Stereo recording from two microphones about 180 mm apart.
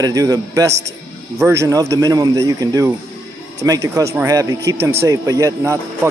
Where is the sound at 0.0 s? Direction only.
20° right (ahead or behind).